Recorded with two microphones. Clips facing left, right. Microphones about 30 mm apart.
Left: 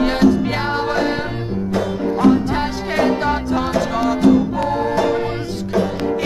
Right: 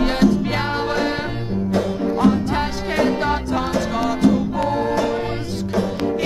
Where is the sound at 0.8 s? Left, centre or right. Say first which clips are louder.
Left 2 dB; centre.